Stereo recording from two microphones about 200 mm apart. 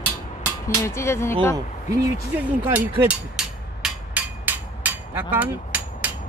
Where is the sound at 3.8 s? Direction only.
10° right (ahead or behind).